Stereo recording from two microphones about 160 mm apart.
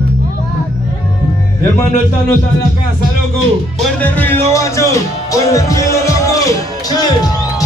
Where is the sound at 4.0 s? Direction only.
10° left (ahead or behind).